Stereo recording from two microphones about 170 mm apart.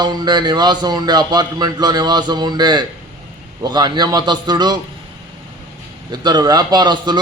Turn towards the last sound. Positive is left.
turn(degrees=-25)  # may be behind; listen again after turning